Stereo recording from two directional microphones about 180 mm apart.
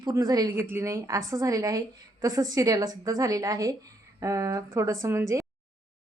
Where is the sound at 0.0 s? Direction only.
20° right (ahead or behind).